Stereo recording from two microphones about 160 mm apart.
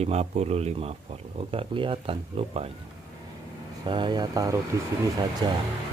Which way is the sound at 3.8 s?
30° right (ahead or behind).